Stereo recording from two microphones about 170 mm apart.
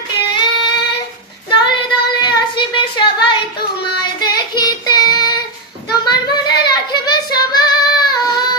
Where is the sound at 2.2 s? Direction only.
25° left (ahead or behind).